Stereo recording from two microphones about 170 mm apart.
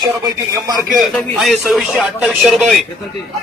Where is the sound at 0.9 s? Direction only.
Centre (ahead or behind).